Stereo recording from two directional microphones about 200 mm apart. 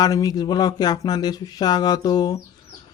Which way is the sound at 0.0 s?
20° left (ahead or behind).